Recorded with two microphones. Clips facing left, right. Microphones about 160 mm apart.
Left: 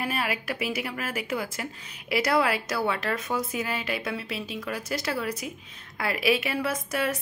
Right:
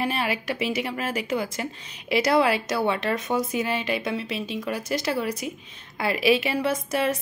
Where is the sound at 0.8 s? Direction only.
25° right (ahead or behind).